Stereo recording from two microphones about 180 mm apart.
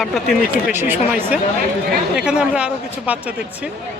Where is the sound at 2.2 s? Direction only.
5° right (ahead or behind).